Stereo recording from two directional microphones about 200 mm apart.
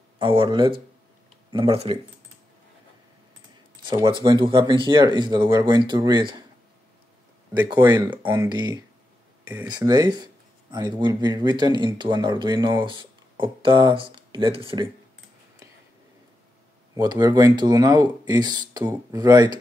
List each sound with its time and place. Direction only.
0.2 s speech: 25° right (ahead or behind)
3.8 s speech: 20° right (ahead or behind)
7.6 s speech: 20° right (ahead or behind)
16.9 s speech: 20° right (ahead or behind)